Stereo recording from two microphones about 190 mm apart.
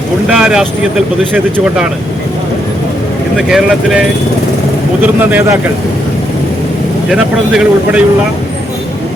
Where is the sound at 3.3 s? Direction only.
Centre (ahead or behind).